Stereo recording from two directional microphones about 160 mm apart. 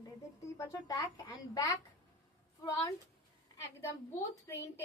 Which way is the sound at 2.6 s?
25° left (ahead or behind).